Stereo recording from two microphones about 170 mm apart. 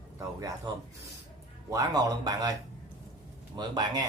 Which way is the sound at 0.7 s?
25° right (ahead or behind).